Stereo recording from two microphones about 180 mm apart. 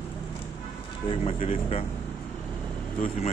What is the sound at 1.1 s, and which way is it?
Speech, 30° left (ahead or behind).